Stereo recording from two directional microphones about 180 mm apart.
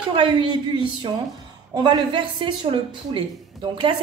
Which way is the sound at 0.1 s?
30° right (ahead or behind).